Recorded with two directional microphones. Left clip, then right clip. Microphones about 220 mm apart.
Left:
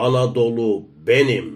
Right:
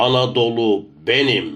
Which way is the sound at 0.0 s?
15° left (ahead or behind).